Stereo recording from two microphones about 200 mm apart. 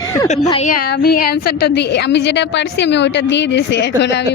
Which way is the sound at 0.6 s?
45° left (ahead or behind).